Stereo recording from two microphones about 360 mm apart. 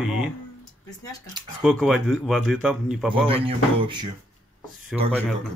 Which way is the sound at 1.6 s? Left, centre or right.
Centre.